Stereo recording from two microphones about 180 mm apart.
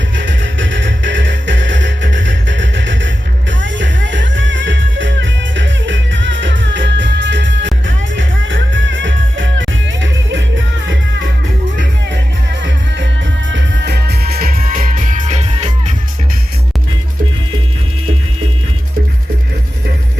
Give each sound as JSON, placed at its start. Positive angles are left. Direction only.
{"t": 0.2, "sound": "music", "side_deg": -90}
{"t": 13.5, "sound": "music", "side_deg": -85}